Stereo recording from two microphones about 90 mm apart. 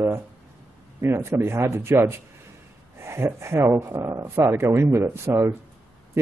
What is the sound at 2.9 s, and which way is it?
Speech, 30° right (ahead or behind).